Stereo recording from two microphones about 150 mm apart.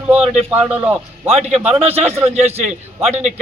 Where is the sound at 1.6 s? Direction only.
45° right (ahead or behind).